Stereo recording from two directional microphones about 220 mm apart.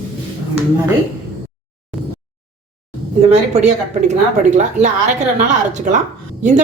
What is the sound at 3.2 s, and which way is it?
A woman's voice, 30° right (ahead or behind).